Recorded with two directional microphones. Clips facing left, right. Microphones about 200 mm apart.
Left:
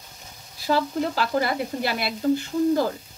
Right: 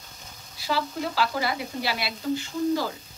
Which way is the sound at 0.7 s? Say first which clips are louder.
Left 5 dB; 50° left (ahead or behind).